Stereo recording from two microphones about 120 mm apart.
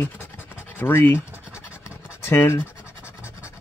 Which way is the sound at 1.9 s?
10° right (ahead or behind).